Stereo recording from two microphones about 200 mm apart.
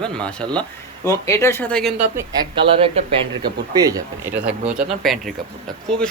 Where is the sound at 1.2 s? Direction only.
15° left (ahead or behind).